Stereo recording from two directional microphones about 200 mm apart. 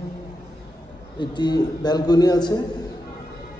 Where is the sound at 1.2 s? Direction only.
20° left (ahead or behind).